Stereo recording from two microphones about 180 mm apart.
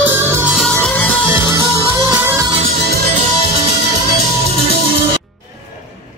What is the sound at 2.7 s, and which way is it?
Music, 55° right (ahead or behind).